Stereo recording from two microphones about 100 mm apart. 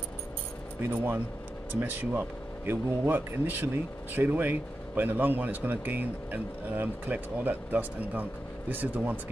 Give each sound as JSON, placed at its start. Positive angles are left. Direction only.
{"t": 0.8, "sound": "speech", "side_deg": -20}